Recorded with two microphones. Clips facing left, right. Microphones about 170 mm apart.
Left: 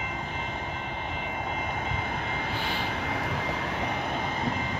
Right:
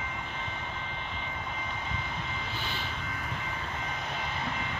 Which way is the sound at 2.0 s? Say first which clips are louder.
Left 6 dB; 55° left (ahead or behind).